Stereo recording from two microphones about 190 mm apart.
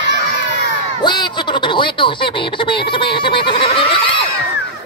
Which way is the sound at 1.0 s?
25° left (ahead or behind).